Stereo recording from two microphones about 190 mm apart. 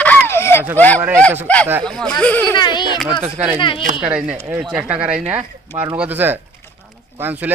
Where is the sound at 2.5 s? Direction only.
25° left (ahead or behind).